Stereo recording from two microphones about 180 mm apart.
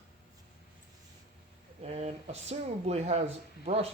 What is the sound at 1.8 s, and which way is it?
Speech, 35° right (ahead or behind).